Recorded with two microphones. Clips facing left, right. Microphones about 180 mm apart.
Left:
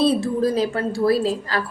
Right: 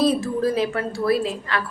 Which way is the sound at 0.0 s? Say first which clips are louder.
Left 1 dB; 30° left (ahead or behind).